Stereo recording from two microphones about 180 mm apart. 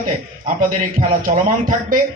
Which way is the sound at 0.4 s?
45° right (ahead or behind).